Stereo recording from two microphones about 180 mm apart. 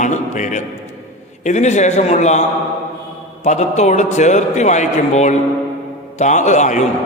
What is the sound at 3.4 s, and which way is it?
A man's voice, 40° left (ahead or behind).